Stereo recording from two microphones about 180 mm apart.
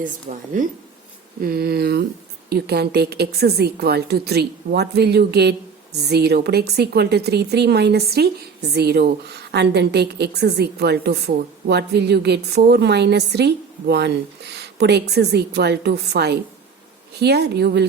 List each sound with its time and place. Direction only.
0.3 s speech: 40° right (ahead or behind)
1.4 s a woman's voice: 55° right (ahead or behind)